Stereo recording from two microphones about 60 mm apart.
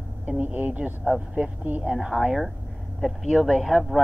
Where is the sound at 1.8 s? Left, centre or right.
Centre.